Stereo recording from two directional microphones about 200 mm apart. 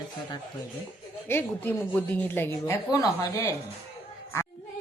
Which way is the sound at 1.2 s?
10° left (ahead or behind).